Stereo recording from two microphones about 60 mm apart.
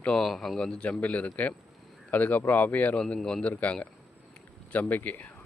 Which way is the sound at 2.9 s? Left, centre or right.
Centre.